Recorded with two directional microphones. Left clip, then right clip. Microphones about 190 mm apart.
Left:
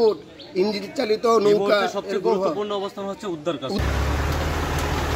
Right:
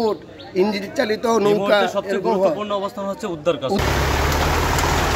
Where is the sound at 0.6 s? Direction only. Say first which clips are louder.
Right 3 dB; centre (ahead or behind).